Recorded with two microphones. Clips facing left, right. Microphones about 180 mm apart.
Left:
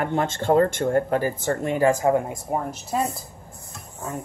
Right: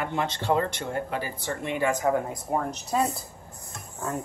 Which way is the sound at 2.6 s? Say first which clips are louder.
Left 1 dB; 5° left (ahead or behind).